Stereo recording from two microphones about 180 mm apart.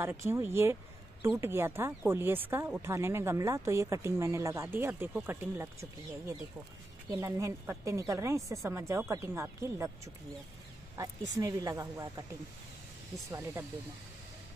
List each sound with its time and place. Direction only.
0.0 s speech: 15° right (ahead or behind)
11.3 s speech: 20° right (ahead or behind)
13.3 s speech: 15° right (ahead or behind)